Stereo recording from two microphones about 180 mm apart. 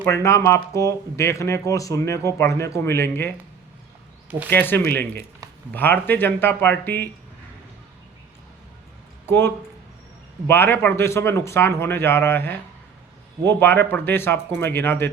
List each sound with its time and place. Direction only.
0.0 s speech: 15° left (ahead or behind)
4.4 s speech: 10° left (ahead or behind)
9.2 s speech: 10° left (ahead or behind)